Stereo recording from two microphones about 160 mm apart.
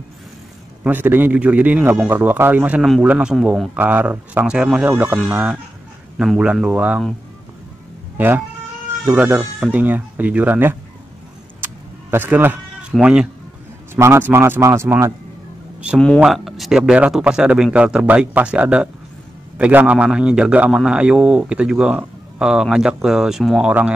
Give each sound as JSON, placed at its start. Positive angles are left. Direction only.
{"t": 0.8, "sound": "a man's voice", "side_deg": -10}
{"t": 8.2, "sound": "a man's voice", "side_deg": -10}
{"t": 11.6, "sound": "a sound", "side_deg": -10}
{"t": 12.9, "sound": "a man's voice", "side_deg": -5}
{"t": 13.9, "sound": "a man's voice", "side_deg": -15}
{"t": 16.2, "sound": "a man's voice", "side_deg": 0}